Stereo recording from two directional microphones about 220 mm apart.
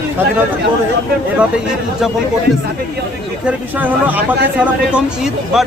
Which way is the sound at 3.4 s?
10° right (ahead or behind).